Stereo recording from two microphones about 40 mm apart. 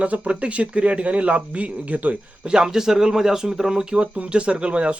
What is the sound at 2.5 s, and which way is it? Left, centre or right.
Speech, centre.